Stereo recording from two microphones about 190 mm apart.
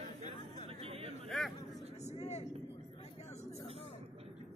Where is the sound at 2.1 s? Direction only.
35° left (ahead or behind).